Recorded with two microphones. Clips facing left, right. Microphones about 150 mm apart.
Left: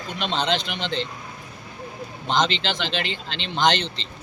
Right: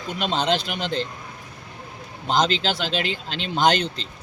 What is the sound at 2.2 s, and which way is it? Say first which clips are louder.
Speech: right 2 dB; 5° right (ahead or behind).